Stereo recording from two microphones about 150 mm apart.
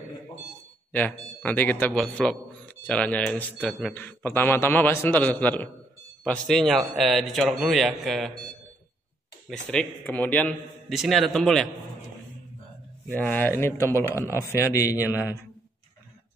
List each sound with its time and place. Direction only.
0.9 s a man's voice: 10° left (ahead or behind)
9.5 s a man's voice: 5° left (ahead or behind)
10.9 s a man's voice: centre (ahead or behind)
13.1 s a man's voice: 10° left (ahead or behind)